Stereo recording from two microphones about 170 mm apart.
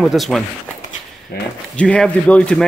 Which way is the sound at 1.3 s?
65° left (ahead or behind).